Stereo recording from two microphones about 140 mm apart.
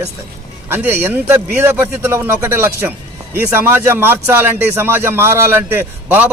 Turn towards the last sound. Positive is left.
turn(degrees=-15)  # may be behind; listen again after turning